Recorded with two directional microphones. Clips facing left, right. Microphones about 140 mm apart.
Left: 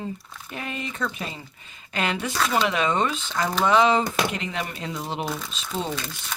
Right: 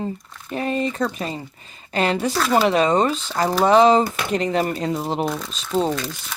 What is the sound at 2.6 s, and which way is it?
Speech, 35° right (ahead or behind).